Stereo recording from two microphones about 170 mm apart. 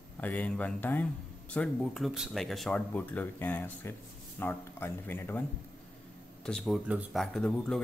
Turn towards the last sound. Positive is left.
turn(degrees=5)  # may be behind; listen again after turning